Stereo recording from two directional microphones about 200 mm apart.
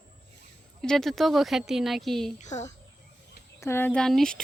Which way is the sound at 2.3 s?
35° left (ahead or behind).